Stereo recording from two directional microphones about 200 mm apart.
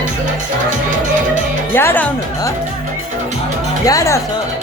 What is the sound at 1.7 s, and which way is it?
Music, 10° left (ahead or behind).